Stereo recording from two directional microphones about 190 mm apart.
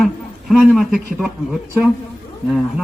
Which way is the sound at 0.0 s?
Centre (ahead or behind).